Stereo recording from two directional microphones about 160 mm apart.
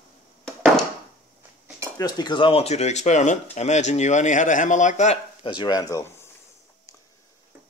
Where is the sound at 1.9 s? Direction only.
25° left (ahead or behind); by 5.2 s 50° left (ahead or behind).